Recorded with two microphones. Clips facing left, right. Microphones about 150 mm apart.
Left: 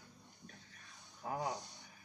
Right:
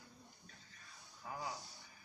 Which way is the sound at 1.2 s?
55° left (ahead or behind).